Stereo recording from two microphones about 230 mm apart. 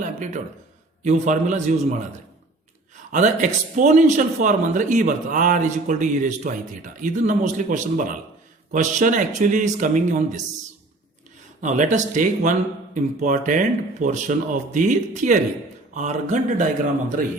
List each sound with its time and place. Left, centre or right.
0.0 s a man's voice: right
11.6 s a man's voice: right